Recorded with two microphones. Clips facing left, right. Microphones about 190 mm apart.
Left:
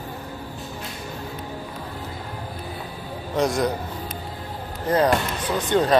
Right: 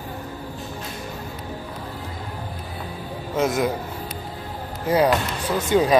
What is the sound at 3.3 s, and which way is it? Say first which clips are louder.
Speech: even; 5° right (ahead or behind).